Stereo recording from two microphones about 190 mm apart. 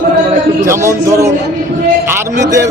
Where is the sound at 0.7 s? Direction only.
15° right (ahead or behind).